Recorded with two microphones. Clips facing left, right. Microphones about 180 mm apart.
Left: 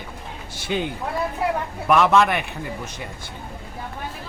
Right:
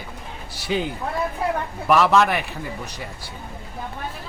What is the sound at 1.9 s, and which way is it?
A man's voice, centre (ahead or behind).